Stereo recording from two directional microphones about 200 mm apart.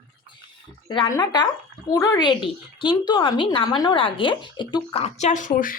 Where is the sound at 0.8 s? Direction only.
25° left (ahead or behind).